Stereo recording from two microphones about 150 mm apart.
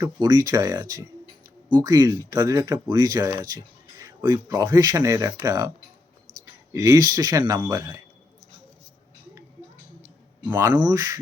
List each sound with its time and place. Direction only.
0.0 s speech: 25° right (ahead or behind)
6.7 s speech: 25° right (ahead or behind)
10.4 s speech: 15° right (ahead or behind)
10.8 s speech: 25° right (ahead or behind)